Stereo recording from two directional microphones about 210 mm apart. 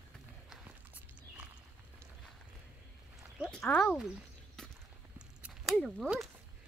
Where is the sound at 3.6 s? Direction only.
5° left (ahead or behind).